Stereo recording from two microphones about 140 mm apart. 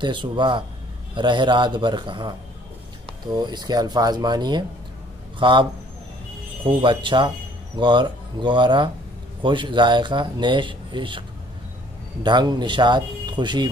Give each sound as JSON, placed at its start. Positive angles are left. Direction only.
{"t": 0.0, "sound": "speech", "side_deg": -35}
{"t": 3.3, "sound": "speech", "side_deg": -30}